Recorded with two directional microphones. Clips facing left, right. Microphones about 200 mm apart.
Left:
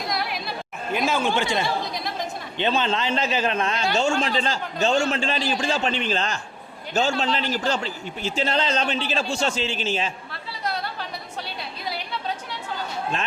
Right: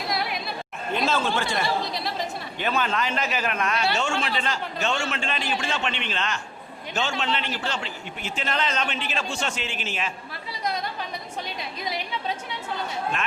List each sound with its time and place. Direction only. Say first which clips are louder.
0.1 s chatter: right 1 dB; centre (ahead or behind)
0.9 s a man's voice: left 2 dB; 10° left (ahead or behind); by 10.1 s 30° left (ahead or behind)